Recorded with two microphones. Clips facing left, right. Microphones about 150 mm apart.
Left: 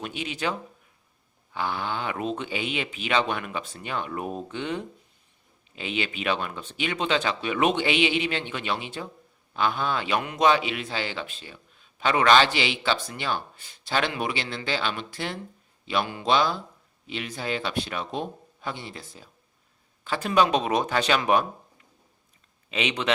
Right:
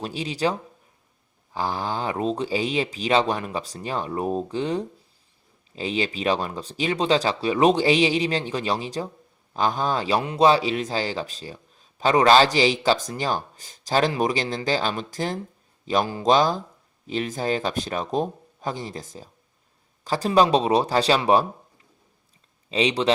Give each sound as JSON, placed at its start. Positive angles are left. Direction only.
{"t": 0.0, "sound": "a man's voice", "side_deg": -35}
{"t": 1.5, "sound": "a man's voice", "side_deg": -35}
{"t": 22.7, "sound": "a man's voice", "side_deg": -35}